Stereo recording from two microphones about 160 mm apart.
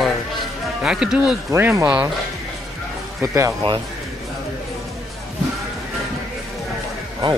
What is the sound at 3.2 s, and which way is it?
Speech, 20° right (ahead or behind).